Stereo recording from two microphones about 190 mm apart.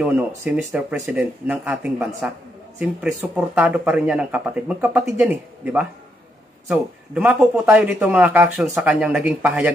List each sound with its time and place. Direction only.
0.0 s speech: 5° right (ahead or behind)